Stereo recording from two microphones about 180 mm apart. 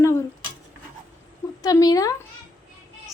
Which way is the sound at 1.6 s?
20° left (ahead or behind).